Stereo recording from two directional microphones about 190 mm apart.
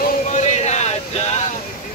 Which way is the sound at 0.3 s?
40° left (ahead or behind).